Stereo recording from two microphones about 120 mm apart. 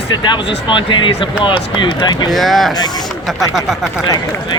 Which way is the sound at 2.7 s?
35° left (ahead or behind).